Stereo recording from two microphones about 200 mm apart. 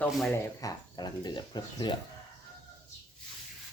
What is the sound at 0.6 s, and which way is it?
Speech, 20° left (ahead or behind).